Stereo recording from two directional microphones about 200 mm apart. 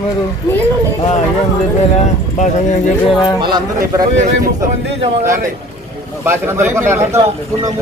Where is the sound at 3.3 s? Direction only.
20° right (ahead or behind).